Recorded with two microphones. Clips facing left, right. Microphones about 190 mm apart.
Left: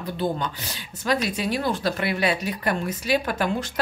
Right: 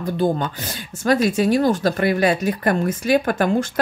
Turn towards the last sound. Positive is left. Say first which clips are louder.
# right 6 dB
turn(degrees=-50)  # may be behind; listen again after turning